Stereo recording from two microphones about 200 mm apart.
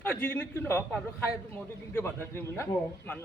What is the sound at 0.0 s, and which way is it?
Speech, 10° left (ahead or behind).